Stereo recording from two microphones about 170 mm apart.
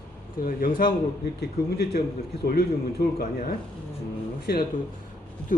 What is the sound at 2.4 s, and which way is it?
Speech, 65° left (ahead or behind).